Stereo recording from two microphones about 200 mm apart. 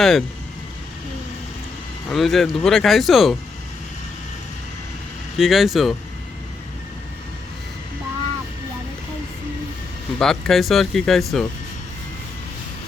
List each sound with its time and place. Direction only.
0.0 s speech: centre (ahead or behind)
2.0 s speech: centre (ahead or behind)
5.4 s speech: centre (ahead or behind)
10.2 s speech: 5° left (ahead or behind)